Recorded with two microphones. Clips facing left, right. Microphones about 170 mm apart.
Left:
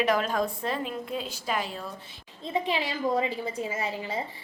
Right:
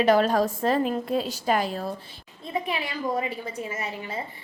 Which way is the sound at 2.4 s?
25° left (ahead or behind).